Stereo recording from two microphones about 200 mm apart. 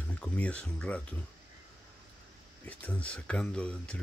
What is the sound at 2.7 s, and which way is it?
Speech, 5° left (ahead or behind).